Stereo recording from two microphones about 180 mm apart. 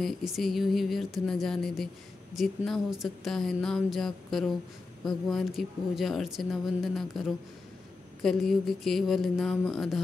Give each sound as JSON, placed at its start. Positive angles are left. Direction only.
{"t": 0.0, "sound": "speech", "side_deg": 0}